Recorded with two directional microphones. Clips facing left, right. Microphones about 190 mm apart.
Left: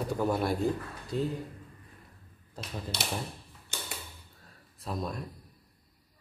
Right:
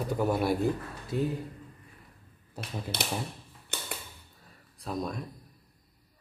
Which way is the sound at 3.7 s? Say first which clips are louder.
Right 2 dB; 60° right (ahead or behind).